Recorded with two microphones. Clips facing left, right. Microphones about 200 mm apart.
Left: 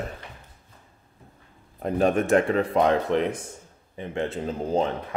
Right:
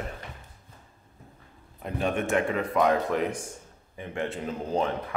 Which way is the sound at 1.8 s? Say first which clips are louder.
Left 6 dB; 40° left (ahead or behind).